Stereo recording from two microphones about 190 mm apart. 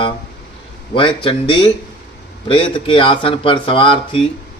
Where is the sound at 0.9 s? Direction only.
25° left (ahead or behind).